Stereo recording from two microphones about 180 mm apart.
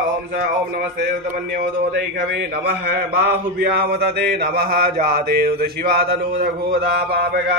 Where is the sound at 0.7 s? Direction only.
60° right (ahead or behind).